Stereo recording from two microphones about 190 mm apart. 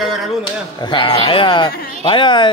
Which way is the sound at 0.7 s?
25° left (ahead or behind).